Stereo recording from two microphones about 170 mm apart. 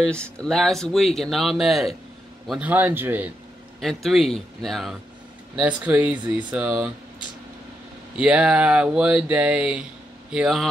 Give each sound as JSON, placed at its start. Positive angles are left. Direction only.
{"t": 0.0, "sound": "speech", "side_deg": 5}
{"t": 3.8, "sound": "speech", "side_deg": 0}
{"t": 8.2, "sound": "speech", "side_deg": -5}